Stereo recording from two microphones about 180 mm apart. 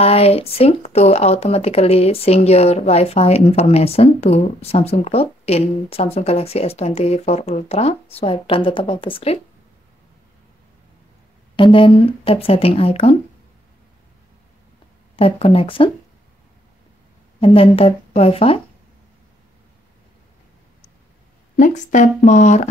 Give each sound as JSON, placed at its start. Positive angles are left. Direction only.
{"t": 0.0, "sound": "speech", "side_deg": 35}
{"t": 11.5, "sound": "speech", "side_deg": 30}
{"t": 15.1, "sound": "speech", "side_deg": 30}
{"t": 17.4, "sound": "speech", "side_deg": 30}
{"t": 21.5, "sound": "speech", "side_deg": 45}